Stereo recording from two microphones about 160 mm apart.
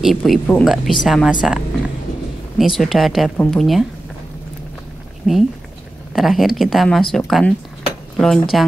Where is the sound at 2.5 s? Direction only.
Centre (ahead or behind).